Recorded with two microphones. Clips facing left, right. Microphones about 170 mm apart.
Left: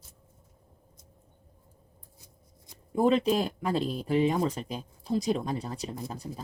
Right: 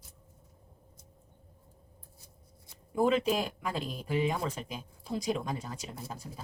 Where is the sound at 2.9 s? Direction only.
35° left (ahead or behind).